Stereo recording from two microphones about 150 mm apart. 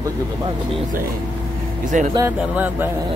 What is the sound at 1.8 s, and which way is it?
Speech, 55° right (ahead or behind).